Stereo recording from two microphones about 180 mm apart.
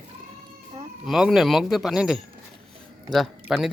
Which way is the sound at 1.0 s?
Centre (ahead or behind).